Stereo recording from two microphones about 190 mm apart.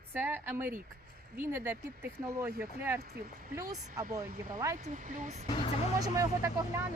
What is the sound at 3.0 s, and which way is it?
Speech, 55° right (ahead or behind).